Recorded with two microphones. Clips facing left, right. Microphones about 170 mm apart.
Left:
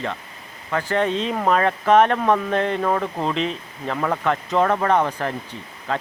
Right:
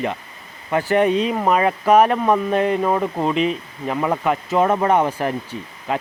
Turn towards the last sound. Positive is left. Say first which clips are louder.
# right 2 dB
turn(degrees=-15)  # may be behind; listen again after turning